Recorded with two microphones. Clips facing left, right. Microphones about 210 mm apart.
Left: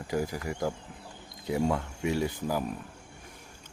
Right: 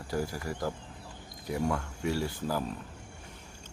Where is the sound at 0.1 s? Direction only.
15° left (ahead or behind).